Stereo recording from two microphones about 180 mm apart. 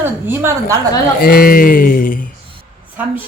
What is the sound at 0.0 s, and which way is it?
Speech, 15° right (ahead or behind).